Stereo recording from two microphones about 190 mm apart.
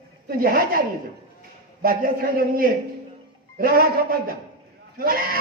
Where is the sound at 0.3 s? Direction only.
50° right (ahead or behind).